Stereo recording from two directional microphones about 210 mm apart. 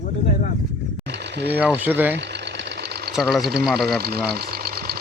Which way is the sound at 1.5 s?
10° right (ahead or behind).